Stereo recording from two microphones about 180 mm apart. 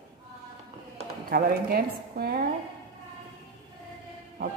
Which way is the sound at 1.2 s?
55° right (ahead or behind).